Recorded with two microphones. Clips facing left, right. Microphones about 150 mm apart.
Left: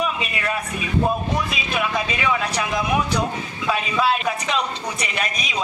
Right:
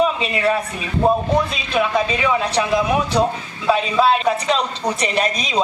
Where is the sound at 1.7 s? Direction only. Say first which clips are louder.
Right 6 dB; 30° right (ahead or behind).